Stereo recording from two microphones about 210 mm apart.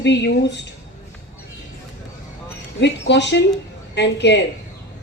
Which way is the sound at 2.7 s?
55° left (ahead or behind).